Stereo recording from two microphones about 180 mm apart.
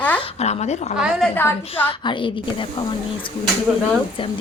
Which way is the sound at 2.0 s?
25° left (ahead or behind).